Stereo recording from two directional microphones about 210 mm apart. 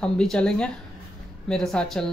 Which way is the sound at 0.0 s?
5° left (ahead or behind).